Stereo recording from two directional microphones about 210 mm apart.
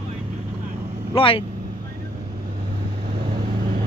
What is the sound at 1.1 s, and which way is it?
Speech, 25° left (ahead or behind).